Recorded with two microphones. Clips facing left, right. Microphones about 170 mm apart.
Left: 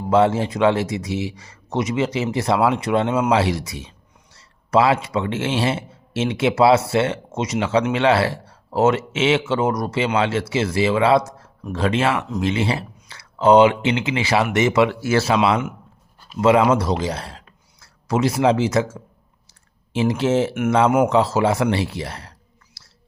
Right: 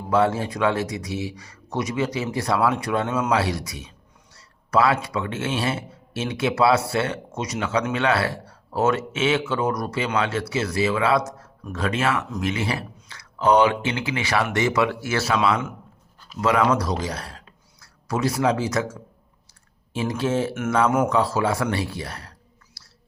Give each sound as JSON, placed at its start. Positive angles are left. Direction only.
{"t": 0.1, "sound": "speech", "side_deg": 25}